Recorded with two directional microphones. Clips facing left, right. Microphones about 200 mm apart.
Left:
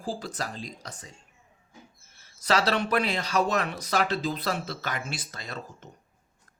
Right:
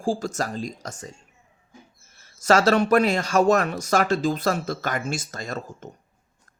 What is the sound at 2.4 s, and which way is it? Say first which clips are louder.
A man's voice: right 7 dB; 45° right (ahead or behind).